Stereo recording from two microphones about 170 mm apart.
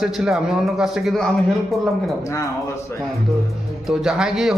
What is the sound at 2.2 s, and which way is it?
Speech, 20° left (ahead or behind).